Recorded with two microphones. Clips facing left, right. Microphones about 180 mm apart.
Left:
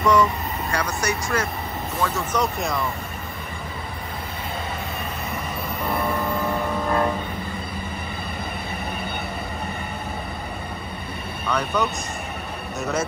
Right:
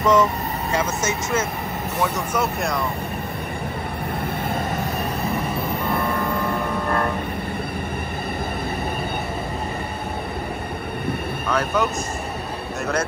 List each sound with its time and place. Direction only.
0.0 s speech: 20° right (ahead or behind)
2.4 s speech: centre (ahead or behind)
11.5 s speech: centre (ahead or behind)